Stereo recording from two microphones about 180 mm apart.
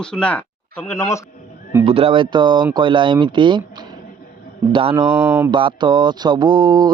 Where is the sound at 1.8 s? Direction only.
30° right (ahead or behind).